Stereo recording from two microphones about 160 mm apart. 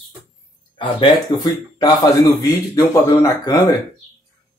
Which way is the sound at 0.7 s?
30° left (ahead or behind).